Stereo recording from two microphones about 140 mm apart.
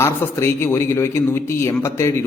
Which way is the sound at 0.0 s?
20° left (ahead or behind).